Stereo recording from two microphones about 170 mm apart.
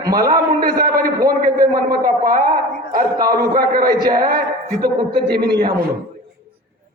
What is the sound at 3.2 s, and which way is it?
Speech, 25° right (ahead or behind).